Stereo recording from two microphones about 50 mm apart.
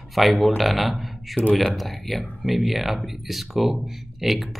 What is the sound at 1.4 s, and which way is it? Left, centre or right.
Speech, right.